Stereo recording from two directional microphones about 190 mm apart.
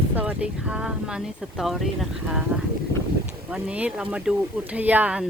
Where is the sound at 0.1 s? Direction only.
5° right (ahead or behind).